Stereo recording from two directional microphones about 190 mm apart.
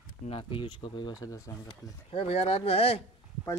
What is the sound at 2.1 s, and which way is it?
Speech, 30° left (ahead or behind).